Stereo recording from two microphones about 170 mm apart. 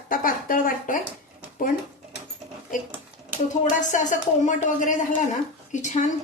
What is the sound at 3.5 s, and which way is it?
Speech, 45° left (ahead or behind).